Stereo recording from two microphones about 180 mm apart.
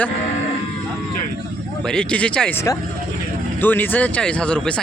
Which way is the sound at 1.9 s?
5° left (ahead or behind).